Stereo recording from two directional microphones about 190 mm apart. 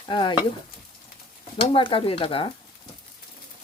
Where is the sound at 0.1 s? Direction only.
25° left (ahead or behind).